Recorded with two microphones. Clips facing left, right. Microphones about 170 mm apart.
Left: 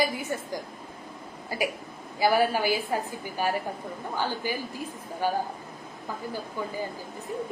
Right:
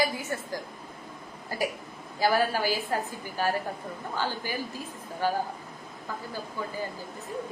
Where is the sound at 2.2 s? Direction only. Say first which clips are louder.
Left 2 dB; 15° left (ahead or behind).